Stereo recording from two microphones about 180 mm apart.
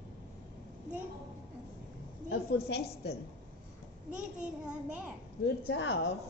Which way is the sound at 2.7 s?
65° left (ahead or behind).